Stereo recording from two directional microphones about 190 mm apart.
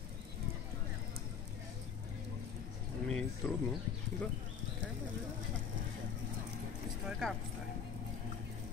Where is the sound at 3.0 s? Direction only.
5° left (ahead or behind).